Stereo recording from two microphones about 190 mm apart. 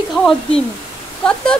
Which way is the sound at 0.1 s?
Centre (ahead or behind).